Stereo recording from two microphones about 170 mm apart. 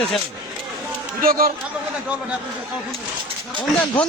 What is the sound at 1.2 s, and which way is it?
Speech, 60° right (ahead or behind).